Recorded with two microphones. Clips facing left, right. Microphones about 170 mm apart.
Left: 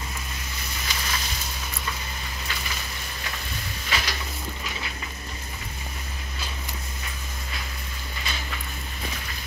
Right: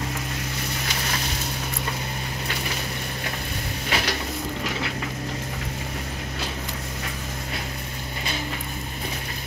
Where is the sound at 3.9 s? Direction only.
60° right (ahead or behind).